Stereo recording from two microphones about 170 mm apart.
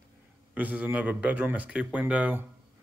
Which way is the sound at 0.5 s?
10° right (ahead or behind).